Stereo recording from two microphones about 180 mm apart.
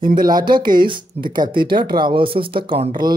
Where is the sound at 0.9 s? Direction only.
25° right (ahead or behind).